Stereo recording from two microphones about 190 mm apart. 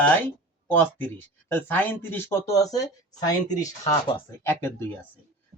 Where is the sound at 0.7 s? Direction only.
10° left (ahead or behind).